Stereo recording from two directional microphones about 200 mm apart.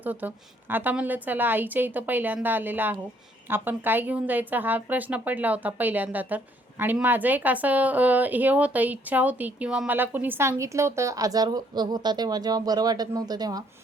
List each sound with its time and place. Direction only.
0.0 s speech: 10° right (ahead or behind)